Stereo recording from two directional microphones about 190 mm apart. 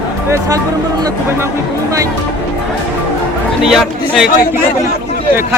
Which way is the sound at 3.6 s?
Centre (ahead or behind).